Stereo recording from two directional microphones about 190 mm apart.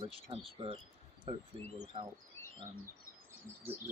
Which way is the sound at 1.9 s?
25° right (ahead or behind).